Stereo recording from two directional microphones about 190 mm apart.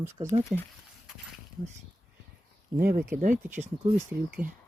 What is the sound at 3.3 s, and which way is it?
Speech, 10° right (ahead or behind).